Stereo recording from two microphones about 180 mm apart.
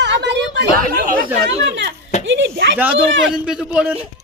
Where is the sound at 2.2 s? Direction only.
85° right.